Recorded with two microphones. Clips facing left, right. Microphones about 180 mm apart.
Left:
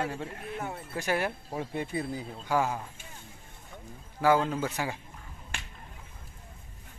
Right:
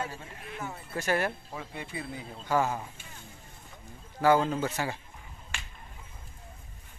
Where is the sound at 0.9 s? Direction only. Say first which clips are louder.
Right 1 dB; 10° left (ahead or behind).